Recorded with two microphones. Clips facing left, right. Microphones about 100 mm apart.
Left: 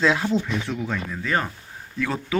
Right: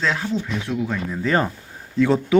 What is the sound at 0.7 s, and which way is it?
Speech, 5° right (ahead or behind).